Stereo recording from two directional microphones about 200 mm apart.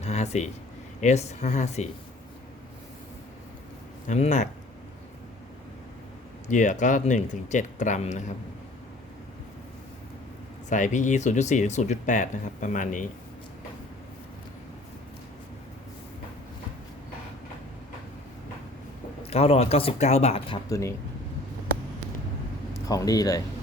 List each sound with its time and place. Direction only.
0.0 s a sound: 35° left (ahead or behind)
1.0 s speech: 35° left (ahead or behind)
4.0 s speech: 35° left (ahead or behind)
6.5 s speech: 40° left (ahead or behind)
10.7 s speech: 40° left (ahead or behind)
19.2 s speech: 30° left (ahead or behind)
20.7 s speech: 15° left (ahead or behind)
22.7 s speech: 15° left (ahead or behind)